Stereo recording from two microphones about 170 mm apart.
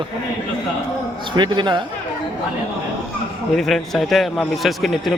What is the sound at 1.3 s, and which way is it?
Speech, 25° right (ahead or behind).